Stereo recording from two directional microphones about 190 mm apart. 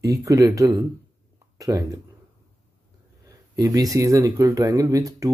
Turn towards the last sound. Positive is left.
turn(degrees=-15)  # may be behind; listen again after turning